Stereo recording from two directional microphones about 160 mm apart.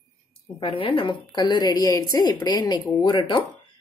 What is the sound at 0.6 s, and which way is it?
Speech, 35° left (ahead or behind).